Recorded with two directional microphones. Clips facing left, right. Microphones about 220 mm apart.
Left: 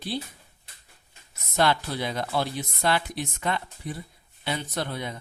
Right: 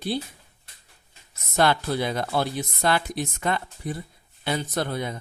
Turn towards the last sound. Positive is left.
turn(degrees=-45)  # may be behind; listen again after turning